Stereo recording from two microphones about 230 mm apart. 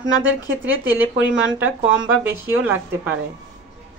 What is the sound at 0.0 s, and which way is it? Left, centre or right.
Speech, right.